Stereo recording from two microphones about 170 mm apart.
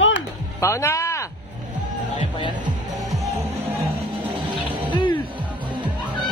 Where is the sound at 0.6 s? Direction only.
15° left (ahead or behind).